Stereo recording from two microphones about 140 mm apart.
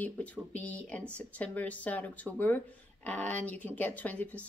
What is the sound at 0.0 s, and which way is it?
Speech, 10° left (ahead or behind).